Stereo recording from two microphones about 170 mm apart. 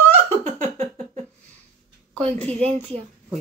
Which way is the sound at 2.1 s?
5° left (ahead or behind).